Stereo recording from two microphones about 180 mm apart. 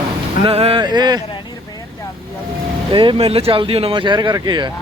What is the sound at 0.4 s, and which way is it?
Speech, 30° right (ahead or behind).